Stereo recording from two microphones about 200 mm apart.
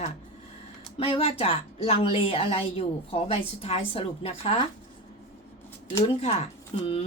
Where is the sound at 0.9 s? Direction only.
30° left (ahead or behind).